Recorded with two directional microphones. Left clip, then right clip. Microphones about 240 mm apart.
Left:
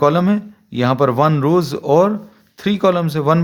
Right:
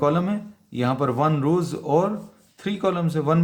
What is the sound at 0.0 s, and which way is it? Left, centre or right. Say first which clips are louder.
A man's voice: left 7 dB; left.